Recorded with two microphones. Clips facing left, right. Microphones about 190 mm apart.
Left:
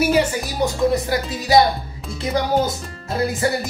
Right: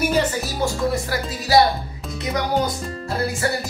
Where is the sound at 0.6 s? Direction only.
20° left (ahead or behind).